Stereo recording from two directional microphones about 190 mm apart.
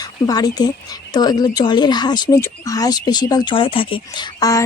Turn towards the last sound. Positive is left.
turn(degrees=20)  # may be behind; listen again after turning